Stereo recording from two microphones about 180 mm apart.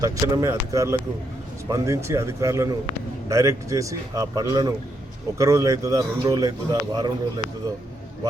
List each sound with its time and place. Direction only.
0.0 s a man's voice: 20° right (ahead or behind)